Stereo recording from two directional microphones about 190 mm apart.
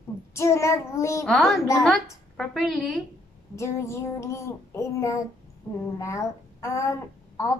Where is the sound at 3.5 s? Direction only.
15° left (ahead or behind).